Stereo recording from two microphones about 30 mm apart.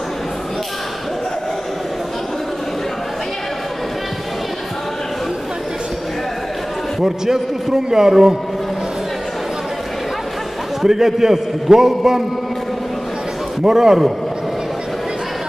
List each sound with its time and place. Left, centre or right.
7.0 s a man's voice: centre
10.8 s a man's voice: centre
13.7 s a man's voice: centre